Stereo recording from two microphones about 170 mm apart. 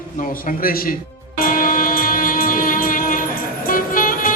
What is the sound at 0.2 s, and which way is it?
Speech, 55° left (ahead or behind).